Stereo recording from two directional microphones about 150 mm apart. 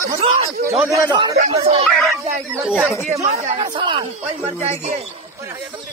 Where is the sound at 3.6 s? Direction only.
30° right (ahead or behind).